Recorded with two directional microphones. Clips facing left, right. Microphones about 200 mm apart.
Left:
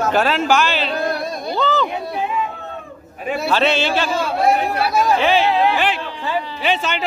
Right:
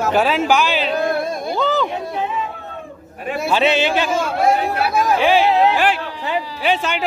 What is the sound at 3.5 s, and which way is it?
Speech, 15° right (ahead or behind).